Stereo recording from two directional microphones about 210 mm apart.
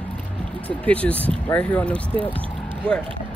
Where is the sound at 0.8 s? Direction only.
5° left (ahead or behind).